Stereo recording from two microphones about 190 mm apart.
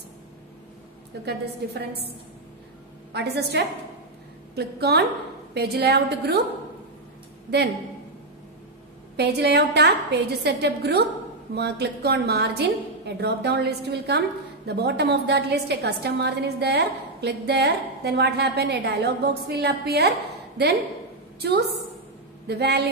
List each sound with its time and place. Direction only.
1.2 s a woman's voice: 60° right (ahead or behind)
3.1 s a woman's voice: 60° right (ahead or behind)
9.1 s a woman's voice: 60° right (ahead or behind)